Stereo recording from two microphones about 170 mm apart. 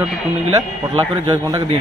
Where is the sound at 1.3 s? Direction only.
20° right (ahead or behind).